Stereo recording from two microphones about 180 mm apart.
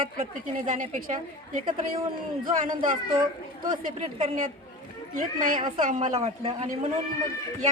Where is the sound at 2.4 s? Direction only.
50° right (ahead or behind).